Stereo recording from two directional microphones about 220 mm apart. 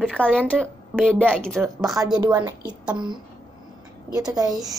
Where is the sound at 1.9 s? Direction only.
15° right (ahead or behind).